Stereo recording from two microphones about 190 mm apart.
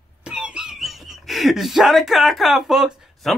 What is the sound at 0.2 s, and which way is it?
Speech, 5° right (ahead or behind).